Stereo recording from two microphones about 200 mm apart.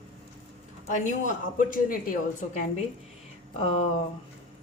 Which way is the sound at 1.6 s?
45° left (ahead or behind).